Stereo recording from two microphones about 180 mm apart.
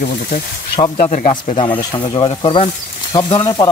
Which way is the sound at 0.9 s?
45° left (ahead or behind).